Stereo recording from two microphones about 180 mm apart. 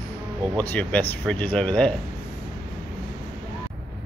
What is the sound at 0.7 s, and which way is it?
Speech, 10° left (ahead or behind).